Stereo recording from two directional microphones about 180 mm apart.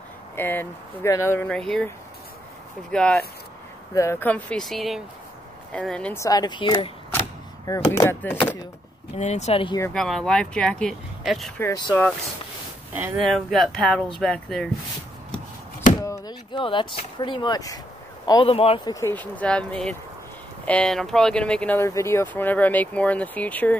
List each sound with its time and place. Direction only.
0.4 s speech: 10° left (ahead or behind)
2.9 s speech: 5° left (ahead or behind)
3.9 s speech: 15° left (ahead or behind)
6.2 s a man's voice: 20° left (ahead or behind)
7.1 s speech: 15° left (ahead or behind)
9.1 s speech: 40° left (ahead or behind)
9.9 s speech: centre (ahead or behind)
11.6 s a man's voice: 20° left (ahead or behind)
12.9 s speech: 5° right (ahead or behind)
16.0 s a man's voice: 20° left (ahead or behind)
18.9 s speech: 10° left (ahead or behind)
21.7 s speech: 15° left (ahead or behind)